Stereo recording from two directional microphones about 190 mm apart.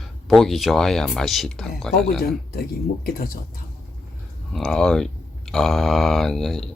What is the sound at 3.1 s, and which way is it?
Speech, 50° left (ahead or behind).